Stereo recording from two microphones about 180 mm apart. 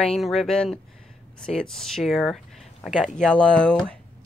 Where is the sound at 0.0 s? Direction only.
Centre (ahead or behind).